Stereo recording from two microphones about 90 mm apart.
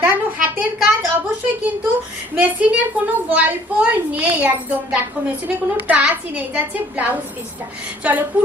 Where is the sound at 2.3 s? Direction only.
15° right (ahead or behind).